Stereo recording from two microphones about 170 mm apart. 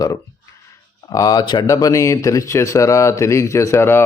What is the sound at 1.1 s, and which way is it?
Speech, 20° left (ahead or behind).